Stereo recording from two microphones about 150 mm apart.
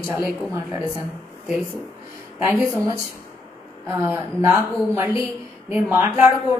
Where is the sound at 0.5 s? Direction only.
25° right (ahead or behind).